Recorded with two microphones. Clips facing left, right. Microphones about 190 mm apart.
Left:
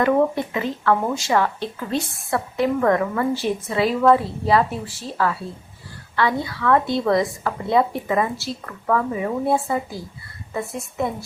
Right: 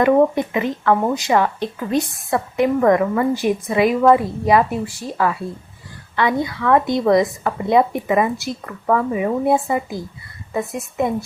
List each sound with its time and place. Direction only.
0.0 s a woman's voice: 15° right (ahead or behind)